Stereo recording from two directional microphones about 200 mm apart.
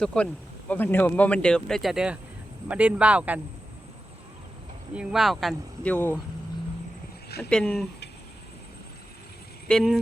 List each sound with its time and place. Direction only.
0.0 s speech: 5° left (ahead or behind)
4.9 s speech: centre (ahead or behind)
7.3 s speech: 50° left (ahead or behind)
7.5 s speech: 5° left (ahead or behind)
9.6 s speech: centre (ahead or behind)